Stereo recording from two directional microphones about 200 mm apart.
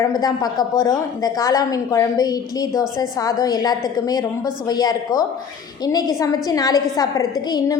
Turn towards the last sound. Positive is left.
turn(degrees=20)  # may be behind; listen again after turning